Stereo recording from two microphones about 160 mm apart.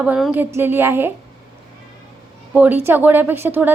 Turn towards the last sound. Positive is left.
turn(degrees=-10)  # may be behind; listen again after turning